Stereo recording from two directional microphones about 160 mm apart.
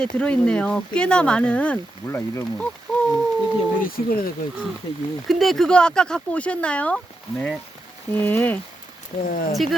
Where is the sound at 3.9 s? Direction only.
70° left (ahead or behind).